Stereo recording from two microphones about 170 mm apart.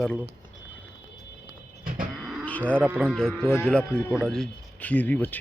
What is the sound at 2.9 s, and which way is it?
Speech, 10° right (ahead or behind).